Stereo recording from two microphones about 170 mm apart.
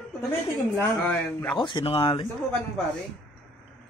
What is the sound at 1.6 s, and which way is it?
Speech, 30° left (ahead or behind).